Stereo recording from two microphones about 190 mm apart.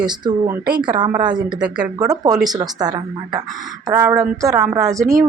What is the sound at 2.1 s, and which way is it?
A woman's voice, 20° right (ahead or behind).